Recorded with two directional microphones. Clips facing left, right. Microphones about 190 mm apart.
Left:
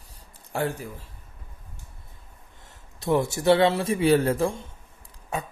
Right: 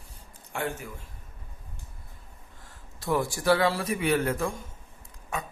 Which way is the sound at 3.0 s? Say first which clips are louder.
Left 4 dB; 20° left (ahead or behind).